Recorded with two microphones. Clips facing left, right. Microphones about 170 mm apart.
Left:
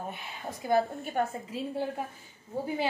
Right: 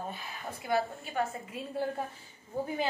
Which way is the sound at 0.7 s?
50° left (ahead or behind).